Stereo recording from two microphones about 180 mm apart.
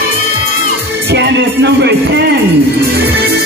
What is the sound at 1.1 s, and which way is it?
Music, 70° right (ahead or behind).